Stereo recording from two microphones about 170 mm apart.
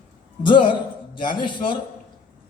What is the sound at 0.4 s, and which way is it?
A man's voice, 30° left (ahead or behind).